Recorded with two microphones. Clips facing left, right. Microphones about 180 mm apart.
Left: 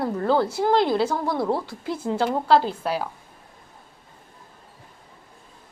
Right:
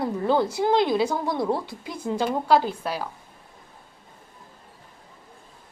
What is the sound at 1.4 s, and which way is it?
Speech, 5° left (ahead or behind).